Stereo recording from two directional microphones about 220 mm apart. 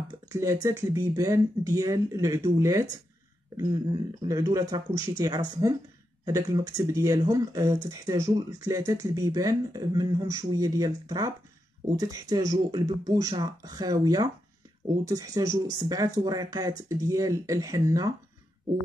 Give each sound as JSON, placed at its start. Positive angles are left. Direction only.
{"t": 0.3, "sound": "speech", "side_deg": -15}
{"t": 4.3, "sound": "speech", "side_deg": -15}